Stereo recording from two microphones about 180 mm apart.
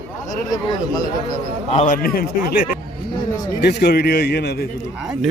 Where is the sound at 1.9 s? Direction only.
55° left (ahead or behind).